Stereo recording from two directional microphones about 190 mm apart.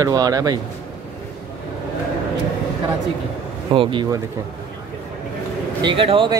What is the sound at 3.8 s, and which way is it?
Speech, 25° right (ahead or behind).